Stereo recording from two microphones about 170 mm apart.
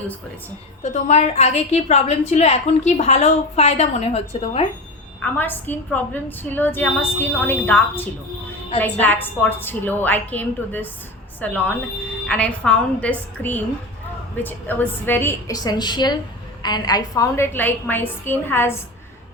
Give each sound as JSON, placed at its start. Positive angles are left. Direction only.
{"t": 0.8, "sound": "a woman's voice", "side_deg": 40}
{"t": 5.2, "sound": "a woman's voice", "side_deg": 10}